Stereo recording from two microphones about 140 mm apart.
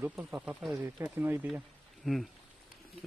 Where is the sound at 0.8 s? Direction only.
20° right (ahead or behind).